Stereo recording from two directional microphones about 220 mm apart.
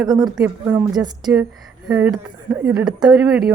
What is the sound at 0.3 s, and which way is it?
Speech, 5° right (ahead or behind).